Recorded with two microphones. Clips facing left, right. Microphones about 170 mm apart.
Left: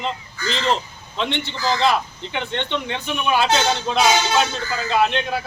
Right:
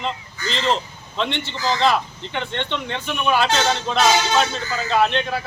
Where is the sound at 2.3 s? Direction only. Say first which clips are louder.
Left 1 dB; 5° left (ahead or behind).